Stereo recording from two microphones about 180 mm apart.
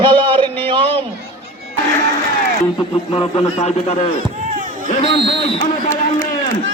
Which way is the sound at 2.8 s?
30° left (ahead or behind).